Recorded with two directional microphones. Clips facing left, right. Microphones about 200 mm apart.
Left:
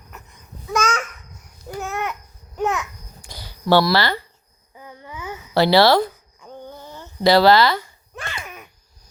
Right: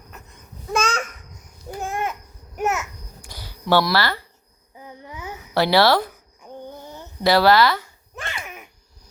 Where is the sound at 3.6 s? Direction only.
15° left (ahead or behind).